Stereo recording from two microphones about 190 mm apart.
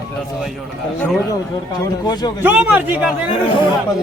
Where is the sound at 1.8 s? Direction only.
20° left (ahead or behind).